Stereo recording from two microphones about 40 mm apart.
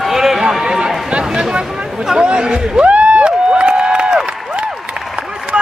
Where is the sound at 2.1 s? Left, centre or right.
Right.